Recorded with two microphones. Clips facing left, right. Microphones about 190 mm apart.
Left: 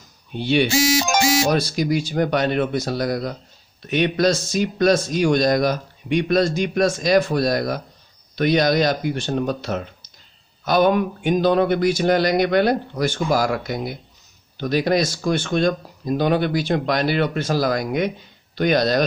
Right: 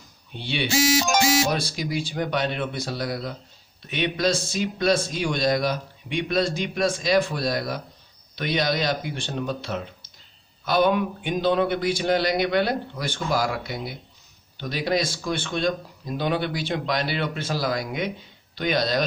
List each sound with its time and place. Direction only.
0.4 s speech: 45° left (ahead or behind)